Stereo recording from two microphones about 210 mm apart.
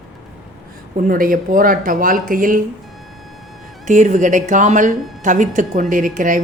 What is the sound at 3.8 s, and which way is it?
A woman's voice, 35° right (ahead or behind).